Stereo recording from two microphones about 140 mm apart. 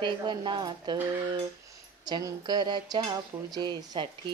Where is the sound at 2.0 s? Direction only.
30° right (ahead or behind).